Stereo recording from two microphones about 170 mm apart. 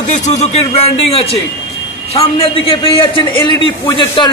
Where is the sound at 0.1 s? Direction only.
40° left (ahead or behind).